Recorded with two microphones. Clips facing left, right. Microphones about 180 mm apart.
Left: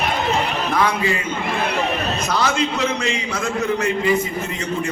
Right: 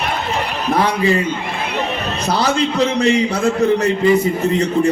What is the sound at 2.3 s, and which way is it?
A man's voice, 35° right (ahead or behind).